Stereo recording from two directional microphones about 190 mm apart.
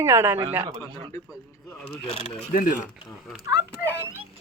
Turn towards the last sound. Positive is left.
turn(degrees=-10)  # may be behind; listen again after turning